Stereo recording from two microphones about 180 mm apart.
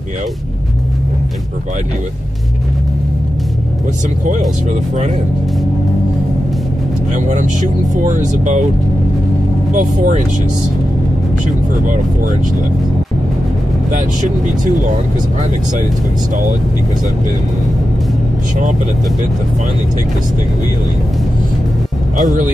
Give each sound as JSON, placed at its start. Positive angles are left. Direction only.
{"t": 7.1, "sound": "speech", "side_deg": -45}
{"t": 9.8, "sound": "speech", "side_deg": -45}
{"t": 22.2, "sound": "speech", "side_deg": -40}